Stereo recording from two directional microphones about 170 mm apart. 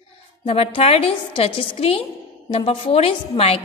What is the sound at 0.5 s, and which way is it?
A woman's voice, 35° left (ahead or behind).